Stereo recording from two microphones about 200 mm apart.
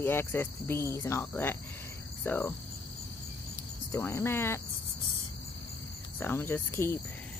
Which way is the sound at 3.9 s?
15° left (ahead or behind).